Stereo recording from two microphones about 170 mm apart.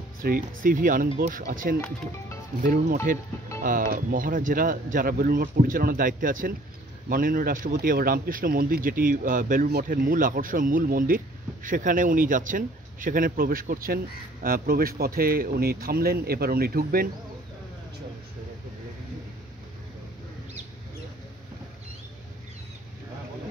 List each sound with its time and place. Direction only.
0.2 s speech: 55° right (ahead or behind)
9.7 s speech: 65° right (ahead or behind)